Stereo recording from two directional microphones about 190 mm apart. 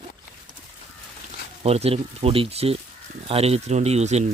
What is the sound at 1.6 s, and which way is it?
Speech, 35° right (ahead or behind).